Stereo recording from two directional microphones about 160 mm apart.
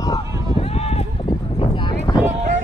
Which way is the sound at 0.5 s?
40° left (ahead or behind).